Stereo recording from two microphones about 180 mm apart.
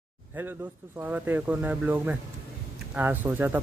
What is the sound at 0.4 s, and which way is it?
Speech, 10° right (ahead or behind).